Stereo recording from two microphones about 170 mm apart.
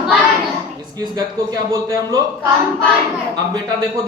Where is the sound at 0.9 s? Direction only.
25° right (ahead or behind).